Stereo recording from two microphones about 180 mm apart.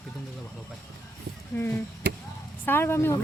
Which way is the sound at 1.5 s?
10° left (ahead or behind).